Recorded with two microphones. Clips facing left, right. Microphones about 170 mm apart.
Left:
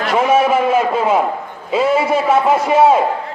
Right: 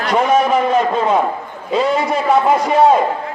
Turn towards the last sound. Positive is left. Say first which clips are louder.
# even
turn(degrees=5)  # may be behind; listen again after turning